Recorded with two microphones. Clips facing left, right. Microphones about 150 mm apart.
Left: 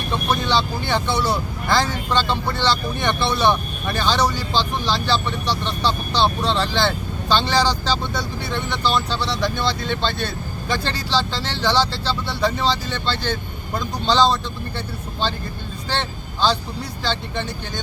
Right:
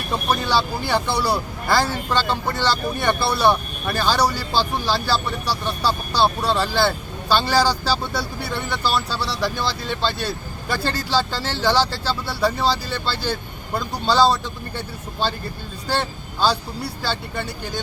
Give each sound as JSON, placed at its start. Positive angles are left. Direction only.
{"t": 0.3, "sound": "speech", "side_deg": -5}
{"t": 15.9, "sound": "speech", "side_deg": -10}